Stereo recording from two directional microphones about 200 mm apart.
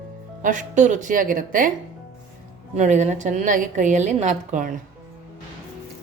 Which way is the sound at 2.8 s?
35° right (ahead or behind).